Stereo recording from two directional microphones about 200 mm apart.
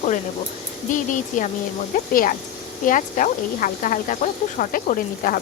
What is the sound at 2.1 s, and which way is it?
Speech, 45° left (ahead or behind).